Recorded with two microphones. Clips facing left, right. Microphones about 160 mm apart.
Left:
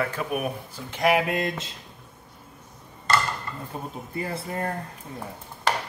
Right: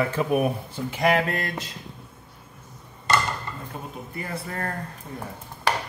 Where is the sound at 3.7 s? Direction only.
30° left (ahead or behind).